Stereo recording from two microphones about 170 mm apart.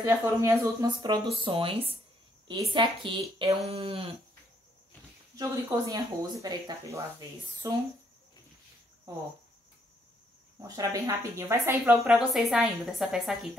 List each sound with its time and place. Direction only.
0.0 s speech: 15° right (ahead or behind); by 4.1 s 35° right (ahead or behind)
5.3 s speech: 20° right (ahead or behind)
10.6 s speech: 20° right (ahead or behind)
12.1 s a woman's voice: centre (ahead or behind)